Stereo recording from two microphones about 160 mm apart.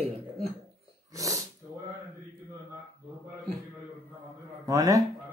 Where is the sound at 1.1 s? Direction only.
20° right (ahead or behind).